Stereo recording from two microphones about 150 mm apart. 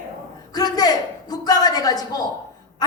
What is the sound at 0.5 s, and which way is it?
A woman's voice, 25° left (ahead or behind).